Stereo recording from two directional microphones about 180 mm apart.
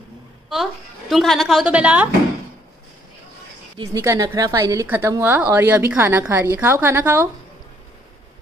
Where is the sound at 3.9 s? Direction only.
20° right (ahead or behind).